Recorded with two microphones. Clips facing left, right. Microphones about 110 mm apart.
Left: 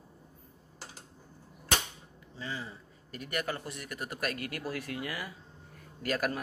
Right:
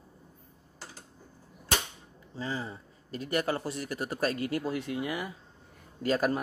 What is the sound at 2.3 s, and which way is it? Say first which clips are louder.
A man's voice: right 5 dB; 35° right (ahead or behind).